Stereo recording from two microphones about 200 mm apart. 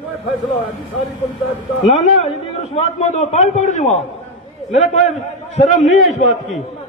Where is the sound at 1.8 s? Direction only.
35° left (ahead or behind).